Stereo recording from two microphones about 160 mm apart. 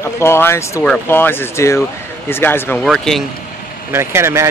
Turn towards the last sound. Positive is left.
turn(degrees=-15)  # may be behind; listen again after turning